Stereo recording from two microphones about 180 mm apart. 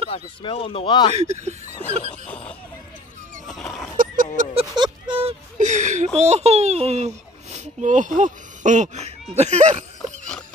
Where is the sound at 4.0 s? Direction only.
50° right (ahead or behind).